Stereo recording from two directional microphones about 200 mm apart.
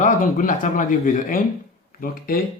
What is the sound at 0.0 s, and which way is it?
Speech, 40° left (ahead or behind).